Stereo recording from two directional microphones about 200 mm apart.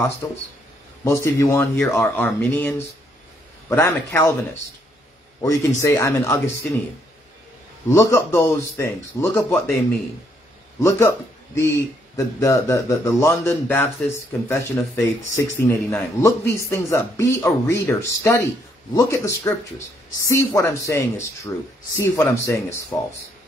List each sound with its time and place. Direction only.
1.0 s speech: 15° left (ahead or behind)
5.4 s speech: 15° left (ahead or behind)
7.9 s speech: 15° left (ahead or behind)
10.8 s a man's voice: 15° left (ahead or behind)
22.9 s speech: centre (ahead or behind)